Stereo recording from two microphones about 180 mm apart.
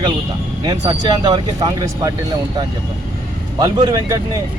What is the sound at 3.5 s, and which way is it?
Speech, 20° right (ahead or behind).